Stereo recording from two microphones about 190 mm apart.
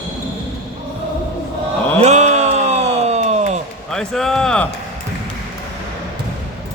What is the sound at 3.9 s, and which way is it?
Speech, 5° left (ahead or behind).